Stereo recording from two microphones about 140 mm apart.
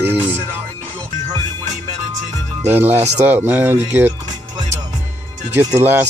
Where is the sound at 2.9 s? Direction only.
50° right (ahead or behind).